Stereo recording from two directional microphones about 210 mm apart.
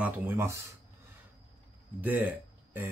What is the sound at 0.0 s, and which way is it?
Speech, 10° right (ahead or behind).